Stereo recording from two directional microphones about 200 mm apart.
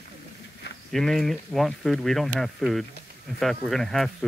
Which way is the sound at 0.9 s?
Centre (ahead or behind).